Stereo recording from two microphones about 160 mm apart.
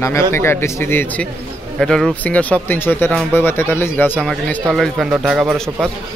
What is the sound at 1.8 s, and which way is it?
A man's voice, centre (ahead or behind).